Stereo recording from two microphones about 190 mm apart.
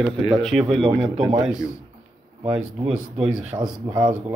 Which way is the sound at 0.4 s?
Centre (ahead or behind).